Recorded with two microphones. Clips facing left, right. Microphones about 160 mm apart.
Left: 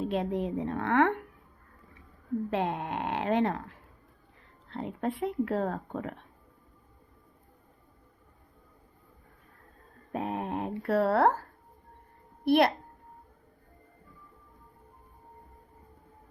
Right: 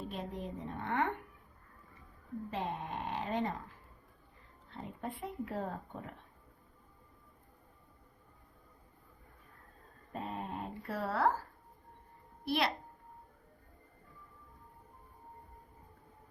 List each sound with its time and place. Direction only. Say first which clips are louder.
0.0 s a woman's voice: left 11 dB; 85° left
2.5 s speech: left 6 dB; 75° left (ahead or behind)
10.1 s speech: left 8 dB; 70° left (ahead or behind)
12.5 s a woman's voice: left 10 dB; 55° left (ahead or behind)